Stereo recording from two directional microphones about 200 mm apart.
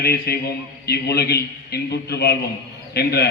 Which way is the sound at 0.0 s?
50° left (ahead or behind).